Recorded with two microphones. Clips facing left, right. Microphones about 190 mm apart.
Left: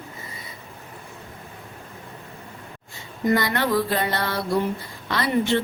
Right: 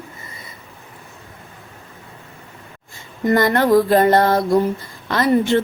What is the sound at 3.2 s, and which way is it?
A woman's voice, 45° right (ahead or behind).